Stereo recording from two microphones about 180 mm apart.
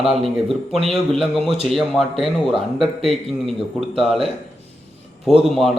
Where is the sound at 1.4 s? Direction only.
35° right (ahead or behind).